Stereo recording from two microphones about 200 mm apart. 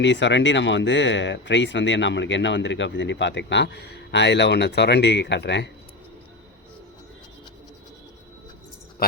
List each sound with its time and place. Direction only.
0.0 s speech: 65° left (ahead or behind)